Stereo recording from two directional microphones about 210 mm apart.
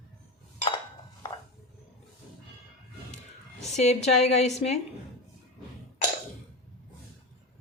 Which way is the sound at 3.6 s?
30° left (ahead or behind).